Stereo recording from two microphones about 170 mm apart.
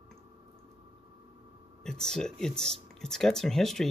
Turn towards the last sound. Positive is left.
turn(degrees=0)  # may be behind; listen again after turning